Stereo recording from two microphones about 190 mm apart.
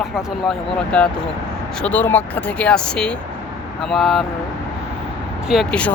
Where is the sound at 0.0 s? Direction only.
Centre (ahead or behind).